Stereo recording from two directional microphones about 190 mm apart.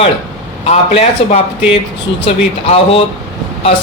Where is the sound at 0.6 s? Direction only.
35° left (ahead or behind).